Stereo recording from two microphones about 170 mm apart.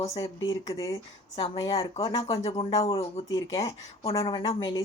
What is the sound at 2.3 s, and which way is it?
Speech, 35° left (ahead or behind).